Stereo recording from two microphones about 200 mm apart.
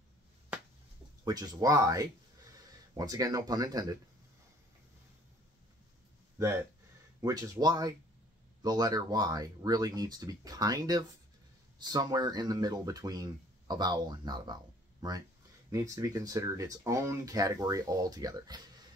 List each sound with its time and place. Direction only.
1.2 s speech: 20° right (ahead or behind)
6.3 s speech: 15° right (ahead or behind)